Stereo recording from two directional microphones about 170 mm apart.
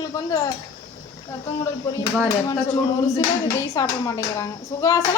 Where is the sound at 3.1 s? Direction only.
20° left (ahead or behind).